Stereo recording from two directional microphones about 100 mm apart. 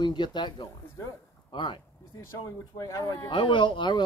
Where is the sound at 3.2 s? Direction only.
55° left (ahead or behind).